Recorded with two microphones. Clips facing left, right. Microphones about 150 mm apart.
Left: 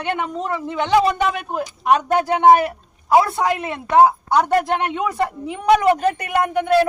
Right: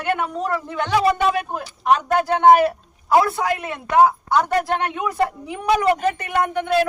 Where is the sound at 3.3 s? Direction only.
25° left (ahead or behind).